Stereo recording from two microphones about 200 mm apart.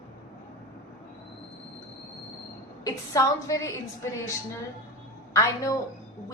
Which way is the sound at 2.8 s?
15° left (ahead or behind).